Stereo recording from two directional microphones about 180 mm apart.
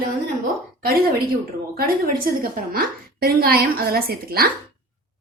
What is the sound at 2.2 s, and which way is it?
A woman's voice, 55° right (ahead or behind).